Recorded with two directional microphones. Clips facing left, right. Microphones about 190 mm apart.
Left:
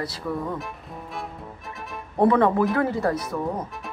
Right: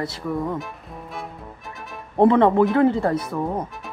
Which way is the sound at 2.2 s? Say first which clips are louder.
Right 3 dB; 25° right (ahead or behind).